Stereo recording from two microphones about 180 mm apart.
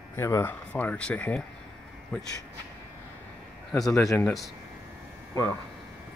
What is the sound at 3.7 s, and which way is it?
Speech, 5° left (ahead or behind).